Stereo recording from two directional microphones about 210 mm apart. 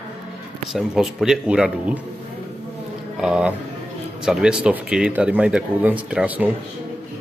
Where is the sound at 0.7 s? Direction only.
Centre (ahead or behind).